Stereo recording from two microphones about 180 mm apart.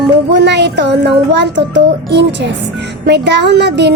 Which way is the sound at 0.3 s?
75° right (ahead or behind).